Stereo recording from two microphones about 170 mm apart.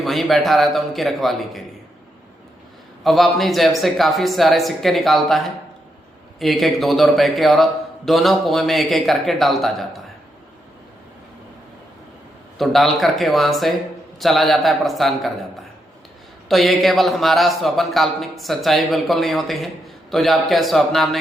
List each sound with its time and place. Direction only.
0.0 s speech: centre (ahead or behind)
3.0 s speech: centre (ahead or behind)
6.4 s speech: centre (ahead or behind)
12.5 s speech: centre (ahead or behind)
16.5 s speech: centre (ahead or behind)